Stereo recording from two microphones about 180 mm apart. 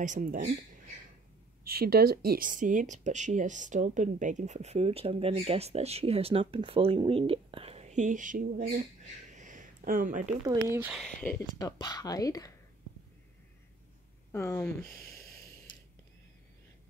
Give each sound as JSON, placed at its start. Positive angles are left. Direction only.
{"t": 0.0, "sound": "speech", "side_deg": -45}
{"t": 1.6, "sound": "speech", "side_deg": -55}
{"t": 9.3, "sound": "a sound", "side_deg": -45}
{"t": 10.4, "sound": "speech", "side_deg": -20}
{"t": 11.0, "sound": "speech", "side_deg": 5}
{"t": 11.3, "sound": "speech", "side_deg": 20}
{"t": 14.3, "sound": "speech", "side_deg": 15}